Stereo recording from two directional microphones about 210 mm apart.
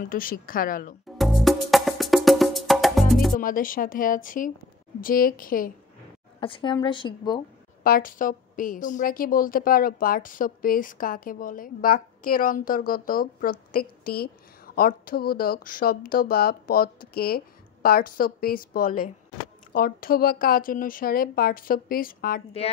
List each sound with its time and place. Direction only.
0.0 s a woman's voice: 40° left (ahead or behind)
1.1 s music: centre (ahead or behind)
3.3 s a woman's voice: 40° left (ahead or behind)
6.4 s a woman's voice: 25° left (ahead or behind)
7.8 s a woman's voice: 40° left (ahead or behind)